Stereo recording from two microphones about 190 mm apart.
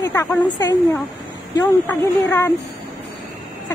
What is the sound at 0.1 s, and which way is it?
Speech, 15° left (ahead or behind).